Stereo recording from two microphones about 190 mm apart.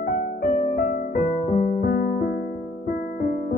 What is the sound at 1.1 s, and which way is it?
Music, 40° left (ahead or behind).